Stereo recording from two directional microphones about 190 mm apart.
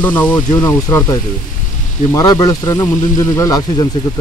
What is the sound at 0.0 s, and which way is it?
Speech, 10° left (ahead or behind).